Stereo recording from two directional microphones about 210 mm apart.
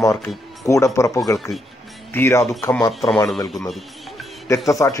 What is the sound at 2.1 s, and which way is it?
Speech, 10° left (ahead or behind).